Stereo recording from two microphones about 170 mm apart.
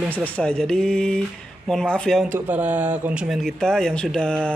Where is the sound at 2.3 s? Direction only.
10° right (ahead or behind).